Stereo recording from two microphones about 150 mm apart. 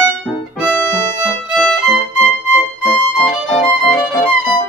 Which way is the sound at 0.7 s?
15° left (ahead or behind).